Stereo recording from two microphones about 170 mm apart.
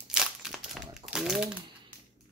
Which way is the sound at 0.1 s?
5° right (ahead or behind).